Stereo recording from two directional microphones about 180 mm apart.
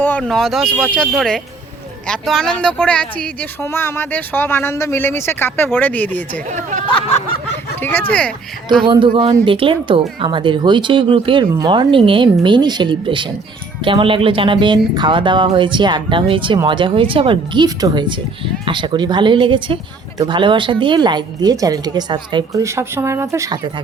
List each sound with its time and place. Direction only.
0.0 s speech: 10° left (ahead or behind)
7.8 s speech: 10° left (ahead or behind)
8.9 s speech: 25° right (ahead or behind)